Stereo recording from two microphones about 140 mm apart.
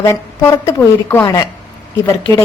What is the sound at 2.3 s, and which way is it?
Speech, 15° left (ahead or behind).